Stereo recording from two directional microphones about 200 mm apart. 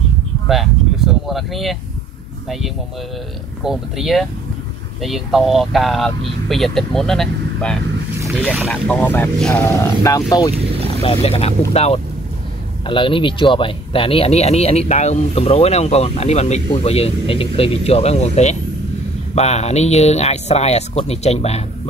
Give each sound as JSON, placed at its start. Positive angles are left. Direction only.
{"t": 0.5, "sound": "vehicle", "side_deg": 0}
{"t": 3.6, "sound": "speech", "side_deg": 0}
{"t": 10.6, "sound": "vehicle", "side_deg": -30}
{"t": 11.0, "sound": "speech", "side_deg": 30}